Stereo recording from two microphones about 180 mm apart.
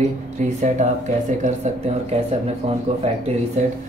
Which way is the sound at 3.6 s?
40° right (ahead or behind).